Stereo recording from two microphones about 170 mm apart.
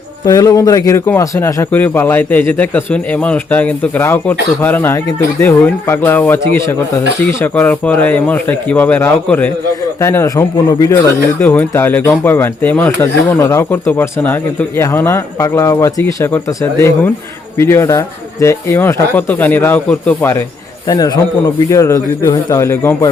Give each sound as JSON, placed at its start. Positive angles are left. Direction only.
{"t": 0.3, "sound": "speech", "side_deg": 20}
{"t": 20.8, "sound": "a man's voice", "side_deg": 25}